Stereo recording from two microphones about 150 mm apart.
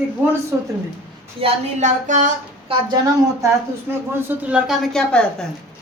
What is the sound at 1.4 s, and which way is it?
Speech, 40° right (ahead or behind).